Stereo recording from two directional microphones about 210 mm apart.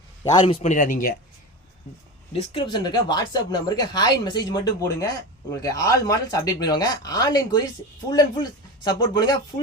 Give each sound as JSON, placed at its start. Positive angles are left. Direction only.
{"t": 0.3, "sound": "a man's voice", "side_deg": 25}
{"t": 2.5, "sound": "speech", "side_deg": 25}